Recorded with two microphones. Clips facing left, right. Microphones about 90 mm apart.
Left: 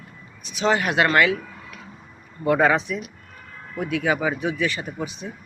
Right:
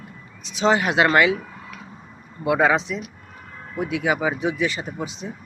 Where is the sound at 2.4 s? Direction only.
10° right (ahead or behind).